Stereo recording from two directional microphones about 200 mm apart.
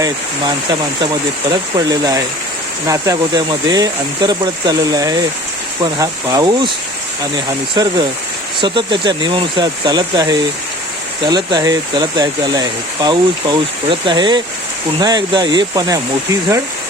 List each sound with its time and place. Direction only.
1.9 s speech: 20° right (ahead or behind)
7.8 s speech: 20° right (ahead or behind)